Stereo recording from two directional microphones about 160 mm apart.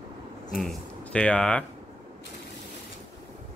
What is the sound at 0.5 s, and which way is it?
Speech, 5° left (ahead or behind).